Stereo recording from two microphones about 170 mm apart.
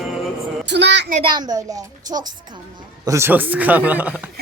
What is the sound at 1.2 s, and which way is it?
A woman's voice, 25° right (ahead or behind).